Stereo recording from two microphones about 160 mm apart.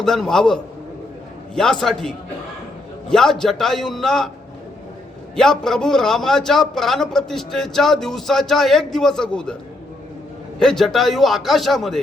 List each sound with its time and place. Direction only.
0.0 s a man's voice: 5° left (ahead or behind)
5.4 s a man's voice: 5° left (ahead or behind)
10.6 s a man's voice: 5° left (ahead or behind)